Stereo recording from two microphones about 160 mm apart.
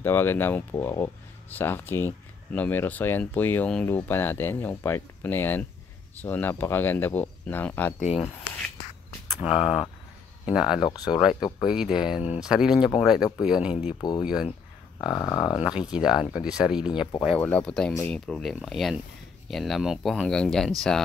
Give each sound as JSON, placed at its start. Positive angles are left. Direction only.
{"t": 0.0, "sound": "speech", "side_deg": 15}
{"t": 8.0, "sound": "speech", "side_deg": 40}
{"t": 9.4, "sound": "speech", "side_deg": -5}
{"t": 10.8, "sound": "speech", "side_deg": 25}
{"t": 11.6, "sound": "speech", "side_deg": -5}
{"t": 15.0, "sound": "speech", "side_deg": 25}
{"t": 15.6, "sound": "speech", "side_deg": -5}
{"t": 17.4, "sound": "speech", "side_deg": 10}